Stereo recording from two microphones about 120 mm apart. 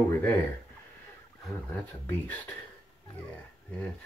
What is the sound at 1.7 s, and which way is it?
Speech, 15° left (ahead or behind).